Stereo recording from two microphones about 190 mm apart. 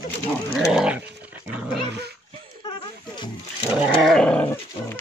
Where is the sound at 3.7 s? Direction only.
Centre (ahead or behind).